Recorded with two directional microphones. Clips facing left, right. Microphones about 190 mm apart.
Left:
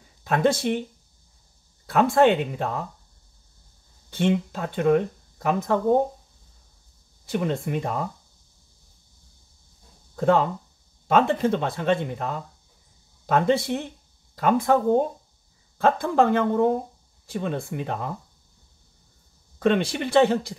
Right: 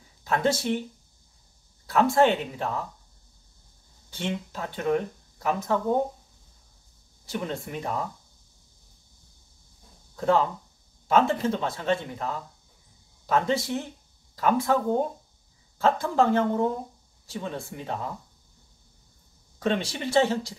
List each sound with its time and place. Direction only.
0.2 s speech: 60° left (ahead or behind)
1.9 s speech: 60° left (ahead or behind)
4.1 s speech: 55° left (ahead or behind)
7.2 s speech: 60° left (ahead or behind)
10.2 s speech: 55° left (ahead or behind)
13.3 s speech: 60° left (ahead or behind)
15.8 s speech: 60° left (ahead or behind)
19.6 s speech: 60° left (ahead or behind)